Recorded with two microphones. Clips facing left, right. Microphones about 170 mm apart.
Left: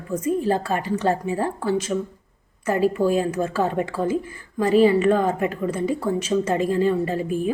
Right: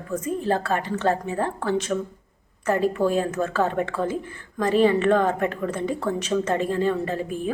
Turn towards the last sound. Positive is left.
turn(degrees=10)  # may be behind; listen again after turning